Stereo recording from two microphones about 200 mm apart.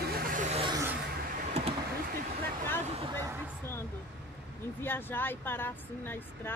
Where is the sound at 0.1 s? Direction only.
40° right (ahead or behind).